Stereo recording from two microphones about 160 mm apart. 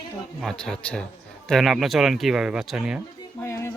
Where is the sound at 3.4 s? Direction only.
15° left (ahead or behind).